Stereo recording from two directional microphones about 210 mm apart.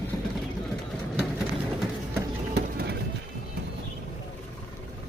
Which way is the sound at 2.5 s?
50° right (ahead or behind).